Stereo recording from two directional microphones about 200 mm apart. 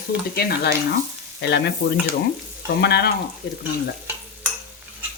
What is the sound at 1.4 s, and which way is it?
Frying, 55° left (ahead or behind).